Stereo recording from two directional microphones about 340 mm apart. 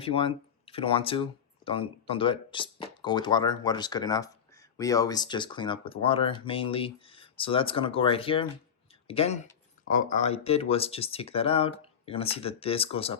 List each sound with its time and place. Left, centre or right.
0.0 s speech: centre